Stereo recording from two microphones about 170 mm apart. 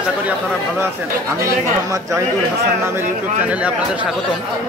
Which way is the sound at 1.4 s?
20° right (ahead or behind).